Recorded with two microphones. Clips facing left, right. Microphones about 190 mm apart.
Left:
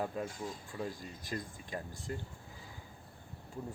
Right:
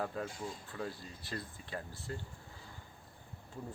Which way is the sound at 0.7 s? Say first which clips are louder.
Left 2 dB; 15° left (ahead or behind).